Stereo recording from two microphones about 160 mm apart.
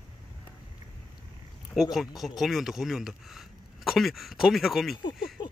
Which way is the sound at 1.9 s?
Centre (ahead or behind).